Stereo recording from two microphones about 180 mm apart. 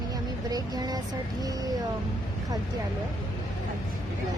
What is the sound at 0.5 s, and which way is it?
Speech, 20° right (ahead or behind).